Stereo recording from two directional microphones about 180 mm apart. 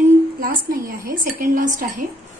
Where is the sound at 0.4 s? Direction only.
50° right (ahead or behind).